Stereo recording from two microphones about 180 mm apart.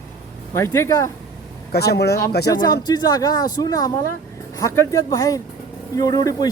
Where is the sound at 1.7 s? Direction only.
65° left (ahead or behind).